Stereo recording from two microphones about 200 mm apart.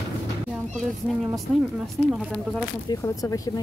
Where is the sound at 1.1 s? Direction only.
Centre (ahead or behind).